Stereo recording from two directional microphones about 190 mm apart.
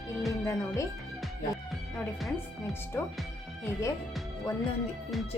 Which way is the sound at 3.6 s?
15° left (ahead or behind).